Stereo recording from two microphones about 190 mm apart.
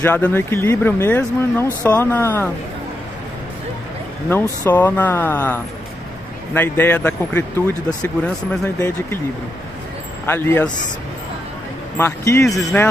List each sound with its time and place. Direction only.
0.0 s speech: 10° left (ahead or behind)
4.3 s speech: 10° left (ahead or behind)
10.2 s speech: 10° left (ahead or behind)
12.0 s speech: 15° left (ahead or behind)
12.4 s speech: centre (ahead or behind)